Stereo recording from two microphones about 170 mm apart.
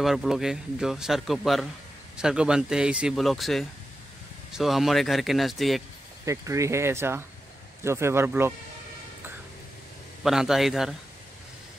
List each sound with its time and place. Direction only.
0.0 s speech: centre (ahead or behind)
6.2 s speech: 20° right (ahead or behind)
10.2 s speech: centre (ahead or behind)